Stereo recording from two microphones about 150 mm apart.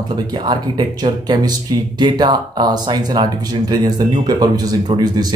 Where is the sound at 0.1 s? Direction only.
30° right (ahead or behind).